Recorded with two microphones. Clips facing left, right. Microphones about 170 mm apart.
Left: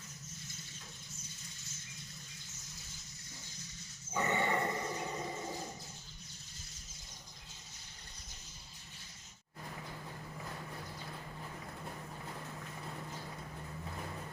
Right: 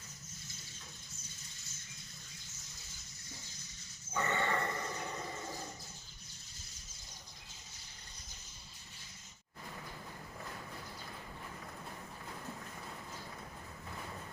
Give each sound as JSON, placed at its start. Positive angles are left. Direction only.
{"t": 4.1, "sound": "dog", "side_deg": 15}